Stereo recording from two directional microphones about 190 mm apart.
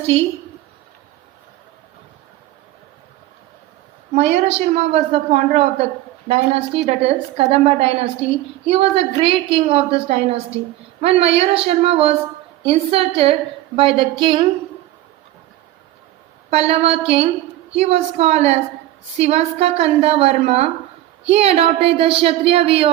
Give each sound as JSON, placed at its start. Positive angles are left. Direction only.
{"t": 0.1, "sound": "a woman's voice", "side_deg": -30}
{"t": 4.1, "sound": "a woman's voice", "side_deg": -35}
{"t": 16.5, "sound": "a woman's voice", "side_deg": -30}